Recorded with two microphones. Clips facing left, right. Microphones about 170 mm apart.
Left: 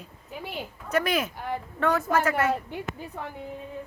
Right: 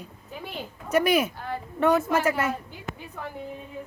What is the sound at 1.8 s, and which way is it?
Speech, 20° right (ahead or behind).